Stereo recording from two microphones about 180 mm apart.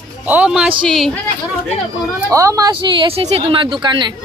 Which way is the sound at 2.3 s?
20° right (ahead or behind).